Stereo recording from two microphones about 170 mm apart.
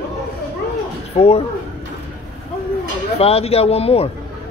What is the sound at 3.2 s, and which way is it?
Speech, 35° left (ahead or behind).